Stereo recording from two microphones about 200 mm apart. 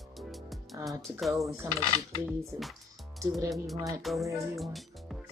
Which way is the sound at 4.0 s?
Centre (ahead or behind).